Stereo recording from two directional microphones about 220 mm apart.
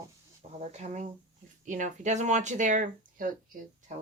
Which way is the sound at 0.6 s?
30° right (ahead or behind).